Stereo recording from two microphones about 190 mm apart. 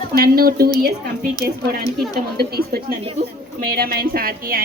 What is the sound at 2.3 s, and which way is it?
A woman's voice, 55° right (ahead or behind).